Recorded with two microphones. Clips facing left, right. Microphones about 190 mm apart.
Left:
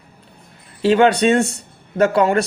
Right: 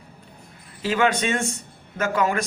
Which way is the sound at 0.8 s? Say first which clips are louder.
Left 8 dB; 35° left (ahead or behind).